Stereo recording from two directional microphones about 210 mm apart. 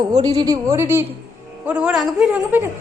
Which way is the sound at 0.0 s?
20° right (ahead or behind).